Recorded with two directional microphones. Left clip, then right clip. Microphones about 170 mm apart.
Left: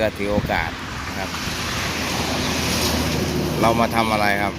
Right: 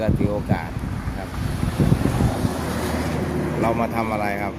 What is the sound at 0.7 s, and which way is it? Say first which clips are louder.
Wind: left 5 dB; 65° right (ahead or behind).